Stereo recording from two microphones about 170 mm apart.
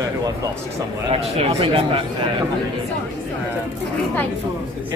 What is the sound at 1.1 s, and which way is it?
Speech, 35° right (ahead or behind).